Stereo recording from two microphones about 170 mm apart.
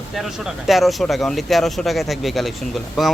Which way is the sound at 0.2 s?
Centre (ahead or behind).